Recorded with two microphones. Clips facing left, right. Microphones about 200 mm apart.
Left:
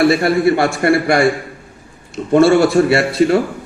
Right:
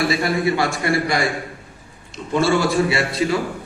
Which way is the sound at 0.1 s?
55° left (ahead or behind).